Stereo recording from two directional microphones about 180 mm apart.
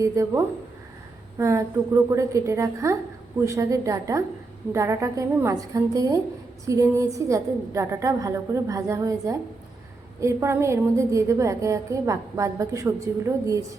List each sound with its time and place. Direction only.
0.0 s a woman's voice: 15° right (ahead or behind)